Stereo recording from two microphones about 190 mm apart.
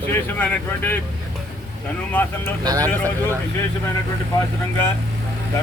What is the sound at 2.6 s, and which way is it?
Speech, 20° right (ahead or behind).